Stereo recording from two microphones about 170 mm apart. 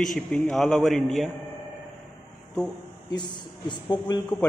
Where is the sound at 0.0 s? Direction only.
5° left (ahead or behind).